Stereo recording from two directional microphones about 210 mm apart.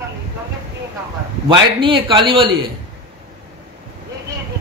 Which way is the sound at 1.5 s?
25° right (ahead or behind).